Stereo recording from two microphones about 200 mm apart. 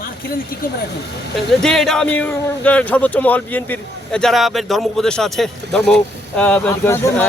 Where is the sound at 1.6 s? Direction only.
Centre (ahead or behind).